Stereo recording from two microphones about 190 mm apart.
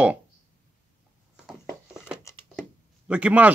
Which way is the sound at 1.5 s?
5° right (ahead or behind).